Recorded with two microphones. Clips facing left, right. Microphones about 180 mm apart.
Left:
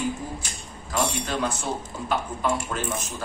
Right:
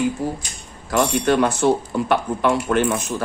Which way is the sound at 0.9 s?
70° right (ahead or behind).